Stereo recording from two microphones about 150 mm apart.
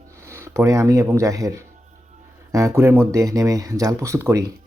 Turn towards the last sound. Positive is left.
turn(degrees=-20)  # may be behind; listen again after turning